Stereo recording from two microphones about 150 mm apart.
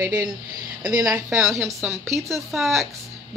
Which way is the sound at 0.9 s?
20° right (ahead or behind).